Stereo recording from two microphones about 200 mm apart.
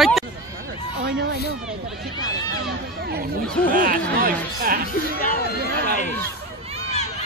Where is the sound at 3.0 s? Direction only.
50° right (ahead or behind).